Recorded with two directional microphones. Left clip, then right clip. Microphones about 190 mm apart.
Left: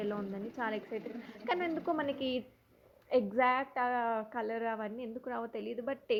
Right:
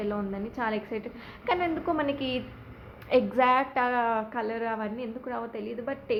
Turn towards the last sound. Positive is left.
turn(degrees=35)  # may be behind; listen again after turning